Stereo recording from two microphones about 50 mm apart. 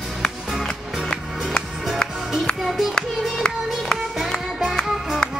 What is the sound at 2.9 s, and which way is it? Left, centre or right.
Music, centre.